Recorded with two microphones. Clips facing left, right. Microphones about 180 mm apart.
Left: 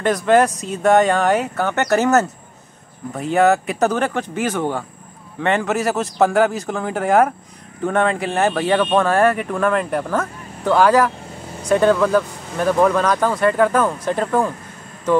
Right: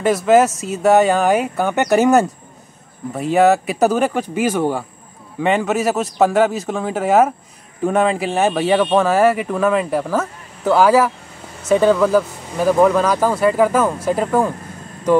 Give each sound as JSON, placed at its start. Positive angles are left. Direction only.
{"t": 0.0, "sound": "speech", "side_deg": -5}